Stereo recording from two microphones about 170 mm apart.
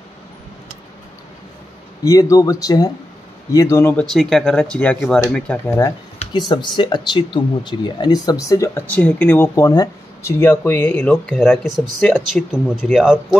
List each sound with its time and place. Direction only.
2.0 s speech: 20° left (ahead or behind)
4.0 s speech: centre (ahead or behind)
6.5 s speech: 25° left (ahead or behind); by 13.4 s centre (ahead or behind)